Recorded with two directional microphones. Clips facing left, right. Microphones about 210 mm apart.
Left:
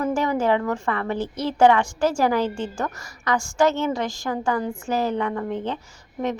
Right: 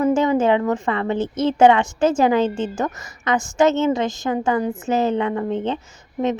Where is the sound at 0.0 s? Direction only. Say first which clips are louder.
Right 5 dB; 20° right (ahead or behind).